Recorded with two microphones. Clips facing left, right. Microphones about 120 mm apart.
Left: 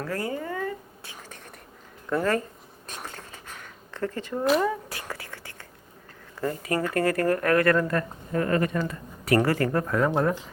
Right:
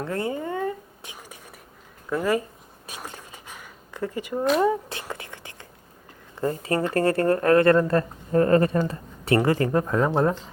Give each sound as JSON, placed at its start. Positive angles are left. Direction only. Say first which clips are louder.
{"t": 0.0, "sound": "a sound", "louder": "right 3 dB", "side_deg": -25}
{"t": 1.1, "sound": "whispering", "louder": "left 1 dB", "side_deg": -10}
{"t": 2.0, "sound": "speech", "louder": "right 1 dB", "side_deg": -10}
{"t": 2.8, "sound": "a sound", "louder": "right 1 dB", "side_deg": -10}
{"t": 4.6, "sound": "whispering", "louder": "right 5 dB", "side_deg": -25}
{"t": 6.3, "sound": "a woman's voice", "louder": "right 3 dB", "side_deg": -25}